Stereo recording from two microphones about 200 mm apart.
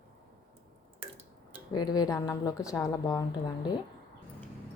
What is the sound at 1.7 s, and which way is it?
A woman's voice, 20° left (ahead or behind).